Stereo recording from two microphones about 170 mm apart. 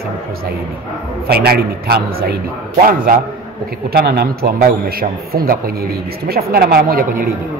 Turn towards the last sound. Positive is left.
turn(degrees=-60)  # may be behind; listen again after turning